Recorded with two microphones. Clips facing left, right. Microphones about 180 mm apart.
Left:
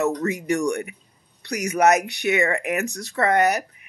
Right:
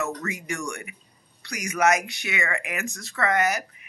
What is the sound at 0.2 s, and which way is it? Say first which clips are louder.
Speech: left 9 dB; 35° left (ahead or behind).